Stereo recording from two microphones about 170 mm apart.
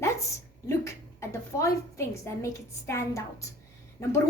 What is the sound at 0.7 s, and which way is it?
A woman's voice, 15° left (ahead or behind).